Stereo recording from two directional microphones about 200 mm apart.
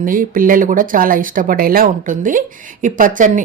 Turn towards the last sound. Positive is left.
turn(degrees=-40)  # may be behind; listen again after turning